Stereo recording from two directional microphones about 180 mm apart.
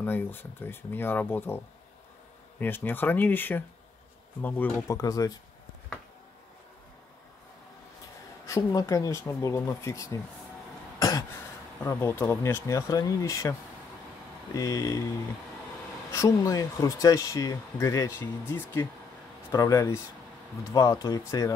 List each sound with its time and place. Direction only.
0.0 s speech: 10° left (ahead or behind)
2.6 s speech: 10° left (ahead or behind)
8.5 s speech: 20° left (ahead or behind)
11.0 s throat clearing: 20° left (ahead or behind)
11.8 s speech: 15° left (ahead or behind)
16.1 s speech: 15° left (ahead or behind)